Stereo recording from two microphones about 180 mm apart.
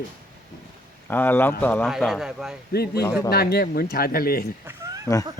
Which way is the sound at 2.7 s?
60° left (ahead or behind).